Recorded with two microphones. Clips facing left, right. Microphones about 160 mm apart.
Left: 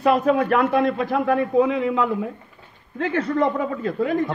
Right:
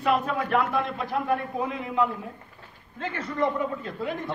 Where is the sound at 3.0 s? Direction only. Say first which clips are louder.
Left 7 dB; 70° left (ahead or behind).